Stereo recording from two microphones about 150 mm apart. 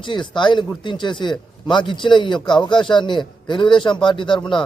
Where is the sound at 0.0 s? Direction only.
30° left (ahead or behind).